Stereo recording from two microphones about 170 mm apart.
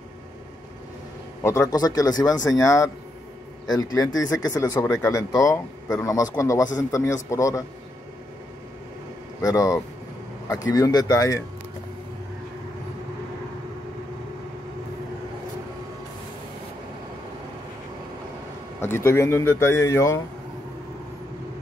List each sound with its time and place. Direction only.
1.4 s speech: 20° left (ahead or behind)
9.4 s speech: 20° left (ahead or behind)
18.8 s speech: 15° left (ahead or behind)